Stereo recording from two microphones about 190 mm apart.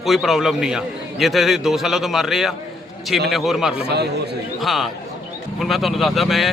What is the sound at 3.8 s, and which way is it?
Speech, 60° right (ahead or behind).